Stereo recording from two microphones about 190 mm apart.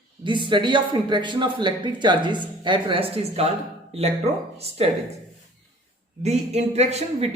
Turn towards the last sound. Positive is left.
turn(degrees=-35)  # may be behind; listen again after turning